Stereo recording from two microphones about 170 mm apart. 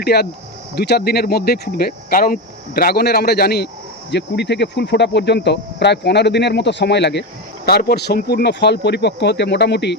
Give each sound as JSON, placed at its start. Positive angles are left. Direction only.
{"t": 0.0, "sound": "speech", "side_deg": 70}
{"t": 4.1, "sound": "speech", "side_deg": 85}